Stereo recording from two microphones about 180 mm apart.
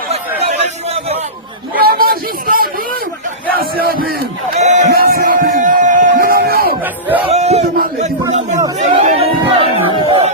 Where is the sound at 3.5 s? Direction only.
55° right (ahead or behind).